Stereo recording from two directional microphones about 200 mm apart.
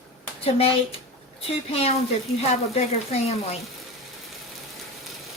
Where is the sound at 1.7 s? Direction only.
30° left (ahead or behind).